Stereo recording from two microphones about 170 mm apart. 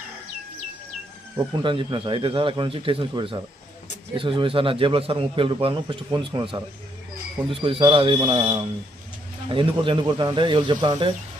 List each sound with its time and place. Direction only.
1.6 s a man's voice: 30° right (ahead or behind)